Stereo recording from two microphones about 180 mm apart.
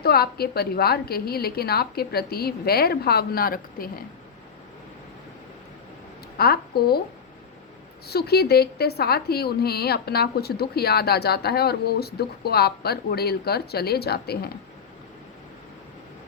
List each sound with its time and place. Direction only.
0.0 s speech: 60° left (ahead or behind)
6.3 s a woman's voice: 60° left (ahead or behind)
8.0 s speech: 60° left (ahead or behind)